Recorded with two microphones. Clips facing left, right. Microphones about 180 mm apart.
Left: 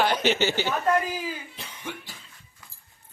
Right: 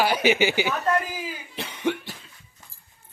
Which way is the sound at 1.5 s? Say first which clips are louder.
Right 11 dB; 70° right (ahead or behind).